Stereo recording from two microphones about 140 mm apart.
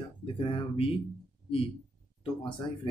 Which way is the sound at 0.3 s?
40° left (ahead or behind).